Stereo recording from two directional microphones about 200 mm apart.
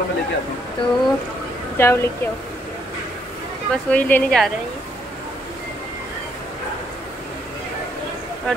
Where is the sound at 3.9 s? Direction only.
10° left (ahead or behind).